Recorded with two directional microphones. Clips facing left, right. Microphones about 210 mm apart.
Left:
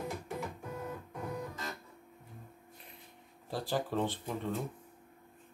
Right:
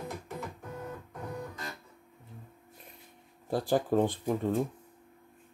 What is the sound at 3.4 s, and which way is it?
Speech, 50° right (ahead or behind).